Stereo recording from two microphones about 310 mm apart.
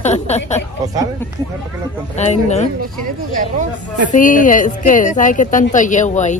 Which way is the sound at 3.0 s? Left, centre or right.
Right.